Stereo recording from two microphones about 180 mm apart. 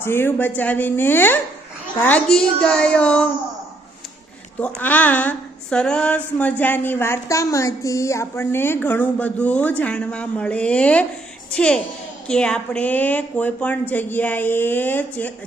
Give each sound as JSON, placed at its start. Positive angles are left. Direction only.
{"t": 0.0, "sound": "a woman's voice", "side_deg": 10}
{"t": 4.6, "sound": "a woman's voice", "side_deg": 10}